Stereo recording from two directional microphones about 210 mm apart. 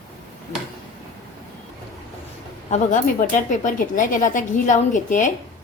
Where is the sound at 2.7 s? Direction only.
35° left (ahead or behind).